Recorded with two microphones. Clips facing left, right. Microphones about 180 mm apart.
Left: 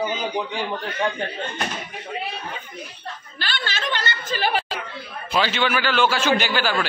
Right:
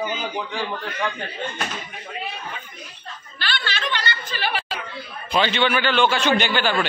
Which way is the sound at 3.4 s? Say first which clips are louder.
Even; 45° left (ahead or behind).